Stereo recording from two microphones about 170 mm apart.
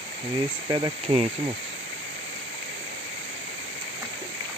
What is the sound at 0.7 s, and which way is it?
Speech, 30° right (ahead or behind).